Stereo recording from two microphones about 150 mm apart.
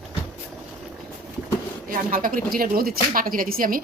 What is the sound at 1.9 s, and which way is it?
Speech, 65° right (ahead or behind).